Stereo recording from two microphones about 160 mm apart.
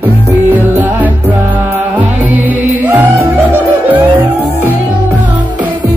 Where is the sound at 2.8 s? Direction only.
10° right (ahead or behind).